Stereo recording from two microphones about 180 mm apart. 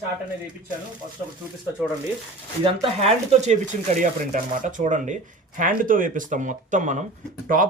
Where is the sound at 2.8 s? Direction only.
35° right (ahead or behind).